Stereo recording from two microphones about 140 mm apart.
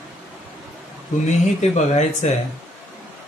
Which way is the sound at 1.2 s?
55° left (ahead or behind).